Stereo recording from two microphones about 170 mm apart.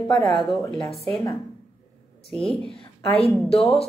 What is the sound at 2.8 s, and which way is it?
Speech, 35° left (ahead or behind).